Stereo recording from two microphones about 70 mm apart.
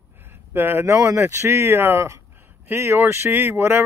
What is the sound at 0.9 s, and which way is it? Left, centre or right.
Speech, right.